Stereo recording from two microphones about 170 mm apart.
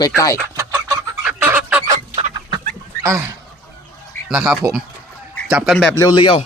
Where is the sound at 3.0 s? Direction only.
15° right (ahead or behind).